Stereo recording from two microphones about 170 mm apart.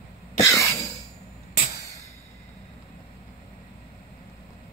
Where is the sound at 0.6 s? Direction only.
20° left (ahead or behind).